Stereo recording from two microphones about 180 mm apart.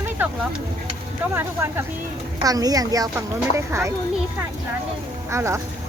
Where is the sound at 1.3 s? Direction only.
15° right (ahead or behind).